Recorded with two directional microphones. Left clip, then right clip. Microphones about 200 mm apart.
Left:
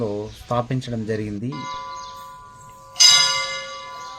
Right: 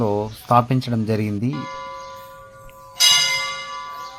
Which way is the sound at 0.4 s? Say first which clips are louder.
Right 8 dB; 30° right (ahead or behind).